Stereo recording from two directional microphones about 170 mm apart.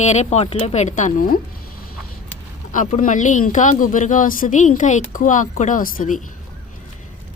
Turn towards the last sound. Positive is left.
turn(degrees=50)  # may be behind; listen again after turning